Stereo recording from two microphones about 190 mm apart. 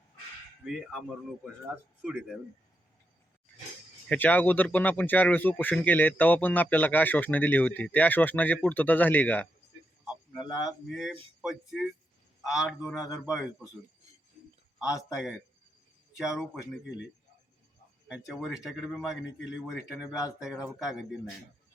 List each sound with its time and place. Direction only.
0.6 s a man's voice: centre (ahead or behind)
4.1 s speech: 10° left (ahead or behind)
10.1 s a man's voice: 5° right (ahead or behind)
14.8 s speech: 15° left (ahead or behind)
15.1 s a man's voice: 5° right (ahead or behind)
18.3 s a man's voice: centre (ahead or behind)
19.1 s a man's voice: 70° left (ahead or behind)
20.4 s a man's voice: centre (ahead or behind)